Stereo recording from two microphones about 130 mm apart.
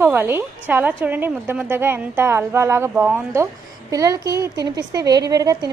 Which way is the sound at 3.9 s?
25° right (ahead or behind).